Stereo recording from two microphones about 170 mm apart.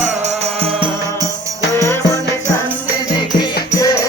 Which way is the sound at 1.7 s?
15° left (ahead or behind).